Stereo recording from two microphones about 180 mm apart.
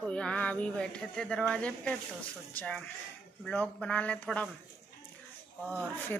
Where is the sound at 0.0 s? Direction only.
5° left (ahead or behind).